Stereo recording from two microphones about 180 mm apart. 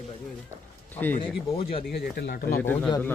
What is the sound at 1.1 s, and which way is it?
Speech, 30° left (ahead or behind).